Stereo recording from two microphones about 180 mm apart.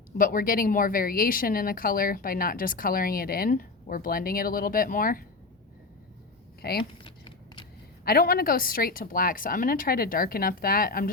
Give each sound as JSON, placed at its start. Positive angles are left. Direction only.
{"t": 0.2, "sound": "a woman's voice", "side_deg": 50}
{"t": 6.6, "sound": "speech", "side_deg": 60}
{"t": 7.0, "sound": "a sound", "side_deg": 30}
{"t": 8.0, "sound": "a woman's voice", "side_deg": 55}